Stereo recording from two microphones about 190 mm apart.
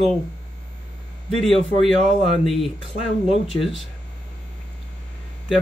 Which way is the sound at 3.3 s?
30° left (ahead or behind).